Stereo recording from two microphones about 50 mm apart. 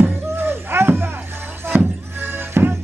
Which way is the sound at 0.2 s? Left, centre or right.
Right.